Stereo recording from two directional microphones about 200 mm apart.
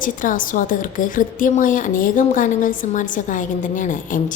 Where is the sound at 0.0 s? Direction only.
40° left (ahead or behind).